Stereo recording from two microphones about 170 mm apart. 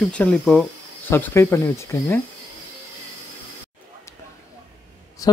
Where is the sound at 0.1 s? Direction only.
5° left (ahead or behind).